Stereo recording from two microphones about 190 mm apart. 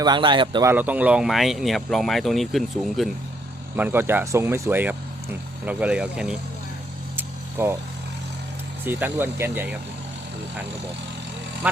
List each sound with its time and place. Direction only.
0.0 s speech: 25° right (ahead or behind)
0.7 s speech: 10° right (ahead or behind)
3.8 s speech: 10° right (ahead or behind)
7.2 s vehicle: 10° right (ahead or behind)
8.8 s speech: 10° right (ahead or behind)
11.6 s speech: 5° right (ahead or behind)